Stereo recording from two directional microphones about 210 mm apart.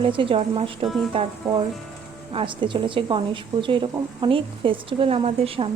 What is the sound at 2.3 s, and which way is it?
A woman's voice, 25° right (ahead or behind).